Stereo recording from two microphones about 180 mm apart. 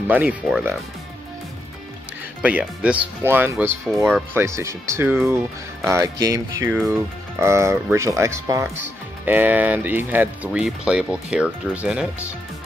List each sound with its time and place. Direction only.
0.1 s speech: 10° right (ahead or behind)
2.4 s speech: 10° right (ahead or behind)